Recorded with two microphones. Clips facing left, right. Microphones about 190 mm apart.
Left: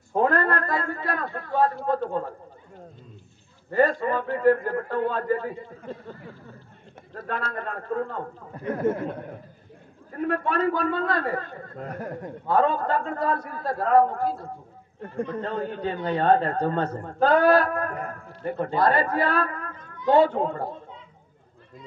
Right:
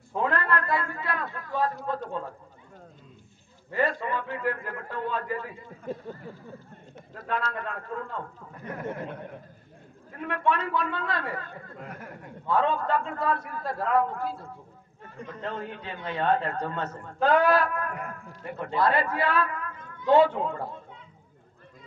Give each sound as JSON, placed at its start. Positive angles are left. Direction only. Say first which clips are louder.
{"t": 0.1, "sound": "a man's voice", "louder": "left 5 dB", "side_deg": 40}
{"t": 3.7, "sound": "a man's voice", "louder": "left 6 dB", "side_deg": 40}
{"t": 7.2, "sound": "a man's voice", "louder": "even", "side_deg": 40}
{"t": 10.1, "sound": "a man's voice", "louder": "left 3 dB", "side_deg": 40}
{"t": 15.0, "sound": "a man's voice", "louder": "left 11 dB", "side_deg": 50}